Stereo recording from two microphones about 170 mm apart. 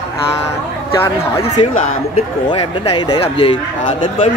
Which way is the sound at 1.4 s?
35° left (ahead or behind).